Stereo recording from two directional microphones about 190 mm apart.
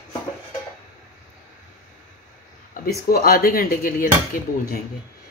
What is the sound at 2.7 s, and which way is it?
Speech, 50° left (ahead or behind).